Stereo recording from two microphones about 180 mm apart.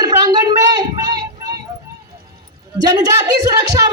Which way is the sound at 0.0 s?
20° right (ahead or behind).